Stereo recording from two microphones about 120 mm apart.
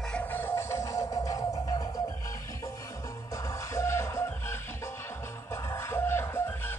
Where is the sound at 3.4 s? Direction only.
25° left (ahead or behind).